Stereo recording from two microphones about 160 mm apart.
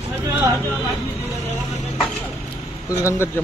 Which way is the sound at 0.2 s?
20° right (ahead or behind).